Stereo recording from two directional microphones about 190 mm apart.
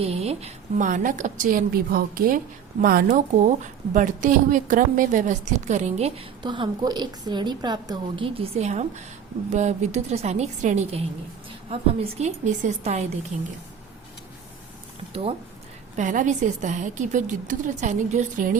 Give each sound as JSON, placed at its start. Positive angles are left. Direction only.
{"t": 0.0, "sound": "a woman's voice", "side_deg": -35}
{"t": 12.1, "sound": "a woman's voice", "side_deg": -40}
{"t": 15.1, "sound": "a woman's voice", "side_deg": -30}